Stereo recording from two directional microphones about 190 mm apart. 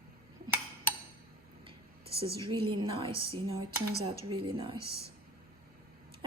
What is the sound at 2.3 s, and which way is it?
Speech, 25° right (ahead or behind).